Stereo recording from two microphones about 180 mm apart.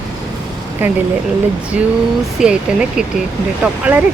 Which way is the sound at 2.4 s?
5° right (ahead or behind).